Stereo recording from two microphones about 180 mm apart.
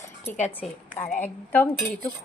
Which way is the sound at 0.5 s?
10° left (ahead or behind).